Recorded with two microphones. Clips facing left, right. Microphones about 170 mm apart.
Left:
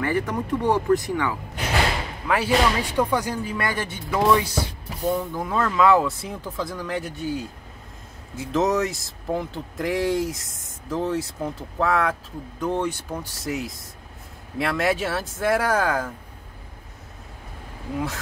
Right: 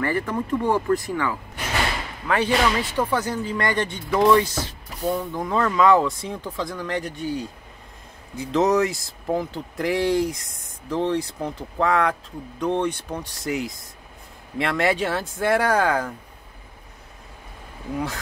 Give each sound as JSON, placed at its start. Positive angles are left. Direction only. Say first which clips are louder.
{"t": 0.0, "sound": "speech", "louder": "even", "side_deg": 15}
{"t": 17.9, "sound": "speech", "louder": "even", "side_deg": 0}